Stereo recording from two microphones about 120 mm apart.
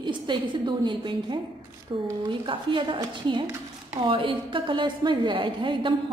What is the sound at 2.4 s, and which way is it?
A woman's voice, 45° right (ahead or behind).